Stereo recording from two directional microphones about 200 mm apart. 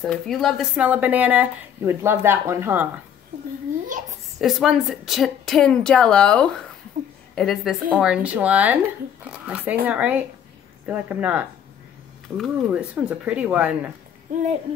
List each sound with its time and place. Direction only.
0.0 s speech: centre (ahead or behind)
4.4 s a woman's voice: centre (ahead or behind)
14.3 s a sound: 40° right (ahead or behind)